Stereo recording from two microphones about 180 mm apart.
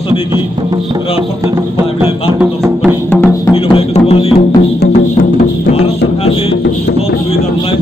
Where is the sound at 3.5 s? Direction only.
30° left (ahead or behind).